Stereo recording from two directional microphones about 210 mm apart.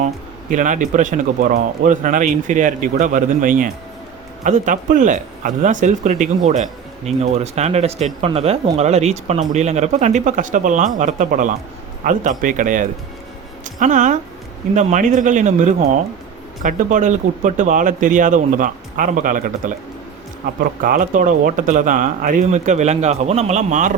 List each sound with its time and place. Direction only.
0.5 s speech: 35° right (ahead or behind)
16.6 s speech: 35° right (ahead or behind)
20.8 s speech: 40° right (ahead or behind)